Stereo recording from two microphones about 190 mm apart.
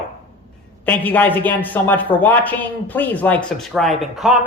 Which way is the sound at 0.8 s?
10° left (ahead or behind).